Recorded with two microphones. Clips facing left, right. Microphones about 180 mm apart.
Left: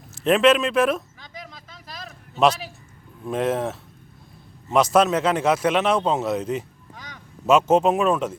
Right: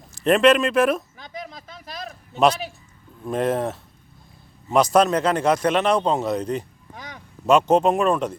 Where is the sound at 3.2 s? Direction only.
Centre (ahead or behind).